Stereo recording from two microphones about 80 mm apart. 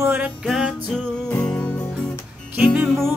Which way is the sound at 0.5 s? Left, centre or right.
Centre.